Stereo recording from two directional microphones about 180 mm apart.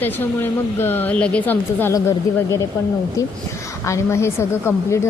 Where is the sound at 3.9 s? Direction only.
15° left (ahead or behind).